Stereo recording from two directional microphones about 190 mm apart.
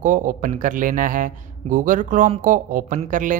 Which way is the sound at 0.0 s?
45° right (ahead or behind).